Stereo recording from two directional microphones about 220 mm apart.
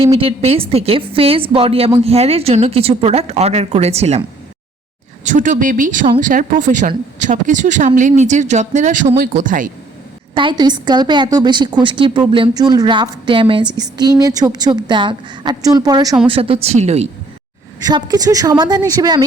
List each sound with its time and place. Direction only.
0.0 s a woman's voice: 25° right (ahead or behind)
5.2 s speech: 35° right (ahead or behind)
10.3 s a woman's voice: 20° right (ahead or behind)
17.8 s a woman's voice: 15° right (ahead or behind)